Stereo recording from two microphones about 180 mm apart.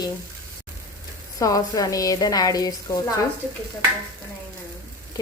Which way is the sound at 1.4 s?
20° left (ahead or behind).